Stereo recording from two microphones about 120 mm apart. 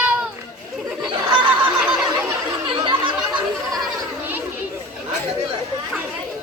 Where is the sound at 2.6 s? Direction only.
45° right (ahead or behind).